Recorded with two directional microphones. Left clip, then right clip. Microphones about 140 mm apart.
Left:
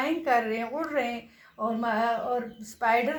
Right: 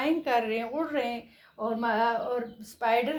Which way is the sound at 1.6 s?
40° right (ahead or behind).